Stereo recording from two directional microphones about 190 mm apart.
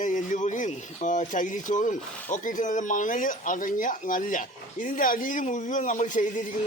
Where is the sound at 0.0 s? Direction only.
40° left (ahead or behind).